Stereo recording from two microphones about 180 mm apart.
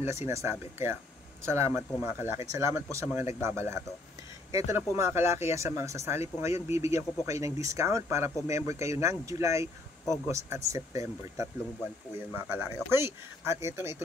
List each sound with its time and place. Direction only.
0.0 s speech: 15° right (ahead or behind)
12.5 s speech: 15° right (ahead or behind)